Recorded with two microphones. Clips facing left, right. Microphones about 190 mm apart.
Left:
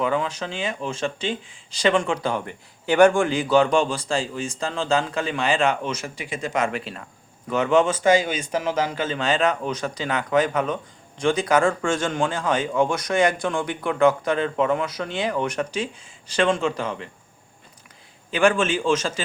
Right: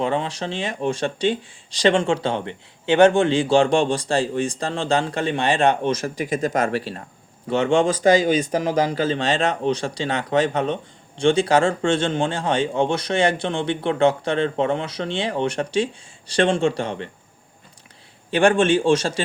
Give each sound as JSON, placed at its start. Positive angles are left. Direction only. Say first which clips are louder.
{"t": 0.0, "sound": "speech", "louder": "right 1 dB", "side_deg": -30}
{"t": 18.3, "sound": "speech", "louder": "right 3 dB", "side_deg": -35}